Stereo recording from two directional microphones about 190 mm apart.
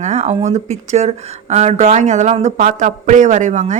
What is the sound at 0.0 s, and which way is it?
Speech, 35° right (ahead or behind).